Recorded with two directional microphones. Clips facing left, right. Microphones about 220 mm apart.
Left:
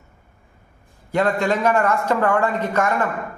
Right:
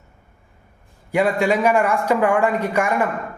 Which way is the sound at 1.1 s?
10° right (ahead or behind).